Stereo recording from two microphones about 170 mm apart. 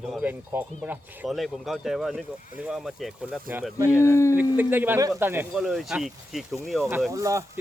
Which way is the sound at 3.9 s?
15° left (ahead or behind).